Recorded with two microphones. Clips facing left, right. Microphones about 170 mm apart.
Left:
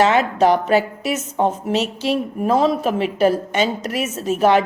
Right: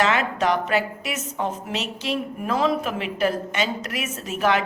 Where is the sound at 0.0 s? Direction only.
30° left (ahead or behind).